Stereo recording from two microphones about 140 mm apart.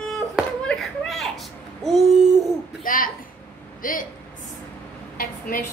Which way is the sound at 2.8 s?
80° left.